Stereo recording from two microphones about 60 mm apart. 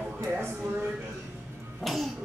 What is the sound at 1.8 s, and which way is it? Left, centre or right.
Music, centre.